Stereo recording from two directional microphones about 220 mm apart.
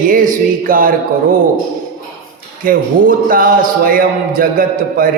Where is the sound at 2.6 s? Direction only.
40° right (ahead or behind).